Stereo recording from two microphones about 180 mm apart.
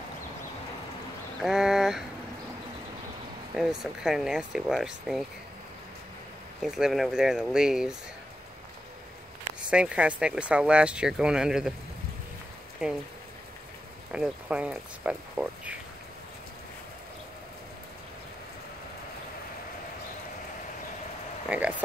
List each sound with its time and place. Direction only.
1.4 s a sound: 5° right (ahead or behind)
3.5 s speech: centre (ahead or behind)
6.6 s speech: centre (ahead or behind)
9.7 s speech: 5° right (ahead or behind)
14.1 s speech: 5° right (ahead or behind)
21.5 s a sound: 10° right (ahead or behind)